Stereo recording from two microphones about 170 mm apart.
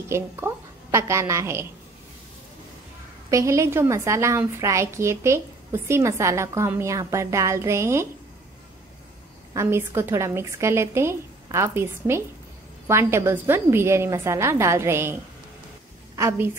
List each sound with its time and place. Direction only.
0.4 s a woman's voice: 10° right (ahead or behind)
3.3 s a woman's voice: 20° right (ahead or behind)
9.5 s a woman's voice: 15° right (ahead or behind)
16.2 s a woman's voice: 15° right (ahead or behind)